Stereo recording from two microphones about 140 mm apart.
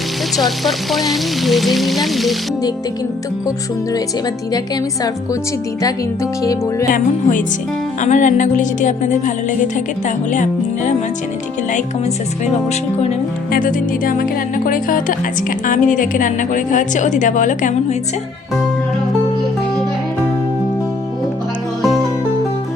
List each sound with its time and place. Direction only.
0.3 s frying: centre (ahead or behind)
6.4 s speech: 25° left (ahead or behind)
6.9 s a woman's voice: 65° left (ahead or behind)
13.5 s a woman's voice: 75° left (ahead or behind)